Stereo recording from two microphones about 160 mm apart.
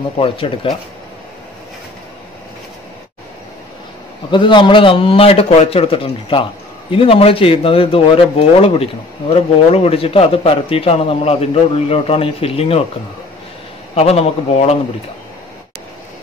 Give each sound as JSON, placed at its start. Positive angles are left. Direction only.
{"t": 0.2, "sound": "a man's voice", "side_deg": 35}
{"t": 4.3, "sound": "a man's voice", "side_deg": 30}
{"t": 13.9, "sound": "a man's voice", "side_deg": 40}